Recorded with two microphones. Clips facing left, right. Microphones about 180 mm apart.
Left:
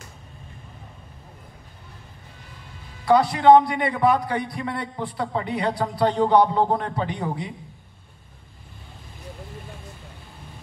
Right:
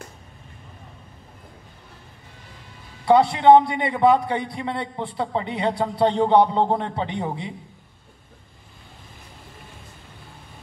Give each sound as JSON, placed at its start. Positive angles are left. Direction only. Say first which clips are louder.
{"t": 3.1, "sound": "a man's voice", "louder": "right 1 dB", "side_deg": -25}